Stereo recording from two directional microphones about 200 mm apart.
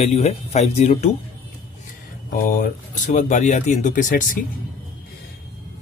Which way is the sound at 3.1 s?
35° left (ahead or behind).